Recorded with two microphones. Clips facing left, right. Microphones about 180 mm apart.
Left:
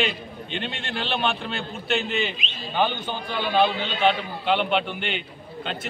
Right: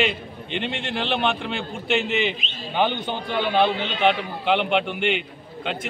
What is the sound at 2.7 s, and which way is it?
A man's voice, 20° right (ahead or behind).